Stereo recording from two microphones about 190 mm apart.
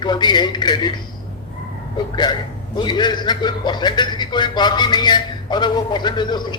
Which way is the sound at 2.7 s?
25° left (ahead or behind).